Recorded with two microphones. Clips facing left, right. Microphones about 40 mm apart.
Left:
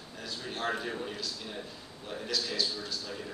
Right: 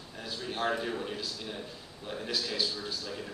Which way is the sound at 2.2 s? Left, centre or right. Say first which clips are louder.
Even; centre.